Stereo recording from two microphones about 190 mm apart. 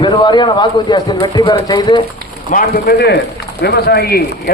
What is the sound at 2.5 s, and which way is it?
A man's voice, 50° left (ahead or behind).